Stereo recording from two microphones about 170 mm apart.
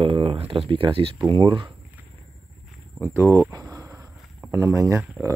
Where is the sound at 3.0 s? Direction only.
15° right (ahead or behind).